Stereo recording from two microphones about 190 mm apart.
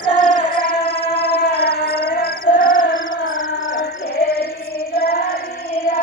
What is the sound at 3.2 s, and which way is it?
Music, 45° left (ahead or behind).